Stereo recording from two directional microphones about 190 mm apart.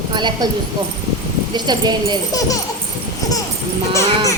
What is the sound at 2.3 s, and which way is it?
Speech, 20° left (ahead or behind).